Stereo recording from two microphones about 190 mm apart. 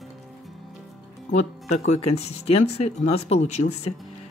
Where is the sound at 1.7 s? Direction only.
35° left (ahead or behind).